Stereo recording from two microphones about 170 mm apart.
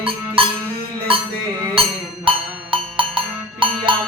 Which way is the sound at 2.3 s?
30° right (ahead or behind).